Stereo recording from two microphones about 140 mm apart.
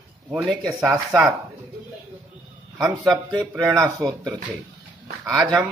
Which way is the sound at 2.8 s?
30° right (ahead or behind).